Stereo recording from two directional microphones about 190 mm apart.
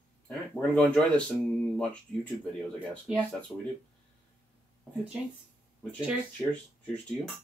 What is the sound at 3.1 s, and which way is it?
Speech, 5° right (ahead or behind).